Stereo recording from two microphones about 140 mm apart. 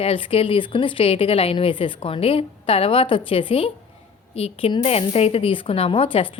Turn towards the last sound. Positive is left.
turn(degrees=40)  # may be behind; listen again after turning